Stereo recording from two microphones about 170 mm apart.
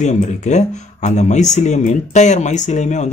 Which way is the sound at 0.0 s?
45° left (ahead or behind).